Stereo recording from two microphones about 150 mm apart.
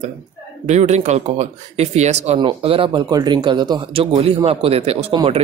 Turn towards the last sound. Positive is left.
turn(degrees=-40)  # may be behind; listen again after turning